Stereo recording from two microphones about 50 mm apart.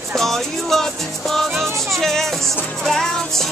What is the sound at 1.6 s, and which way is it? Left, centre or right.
Music, right.